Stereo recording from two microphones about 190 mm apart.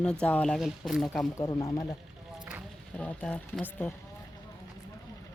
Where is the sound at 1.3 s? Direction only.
15° left (ahead or behind).